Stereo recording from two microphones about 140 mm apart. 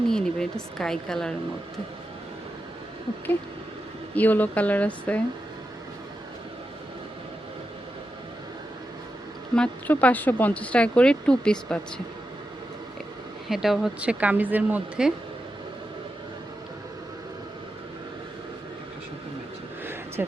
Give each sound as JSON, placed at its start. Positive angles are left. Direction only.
{"t": 0.1, "sound": "a woman's voice", "side_deg": 5}
{"t": 4.1, "sound": "speech", "side_deg": 10}
{"t": 9.6, "sound": "speech", "side_deg": 10}
{"t": 13.5, "sound": "speech", "side_deg": 0}
{"t": 19.8, "sound": "a sound", "side_deg": -15}